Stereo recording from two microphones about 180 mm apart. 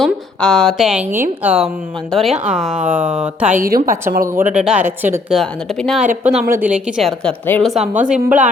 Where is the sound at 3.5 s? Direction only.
55° right (ahead or behind).